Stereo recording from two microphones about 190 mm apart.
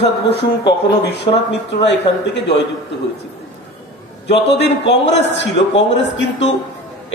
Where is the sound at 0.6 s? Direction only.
20° left (ahead or behind).